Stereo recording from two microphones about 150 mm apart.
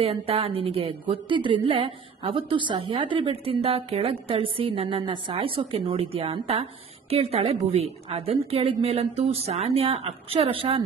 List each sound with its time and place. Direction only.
0.0 s a woman's voice: 40° right (ahead or behind)